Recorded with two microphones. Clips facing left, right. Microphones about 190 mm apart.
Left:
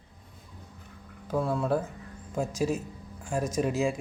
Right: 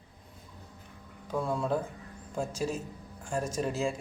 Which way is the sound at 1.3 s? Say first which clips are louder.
Left 3 dB; 5° left (ahead or behind).